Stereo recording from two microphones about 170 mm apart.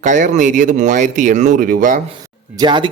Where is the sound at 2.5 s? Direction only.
25° right (ahead or behind).